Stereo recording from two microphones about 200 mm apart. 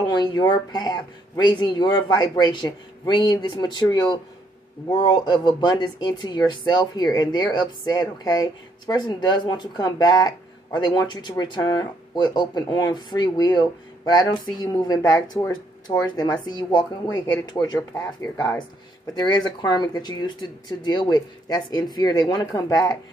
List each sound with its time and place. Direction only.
0.0 s speech: 20° left (ahead or behind)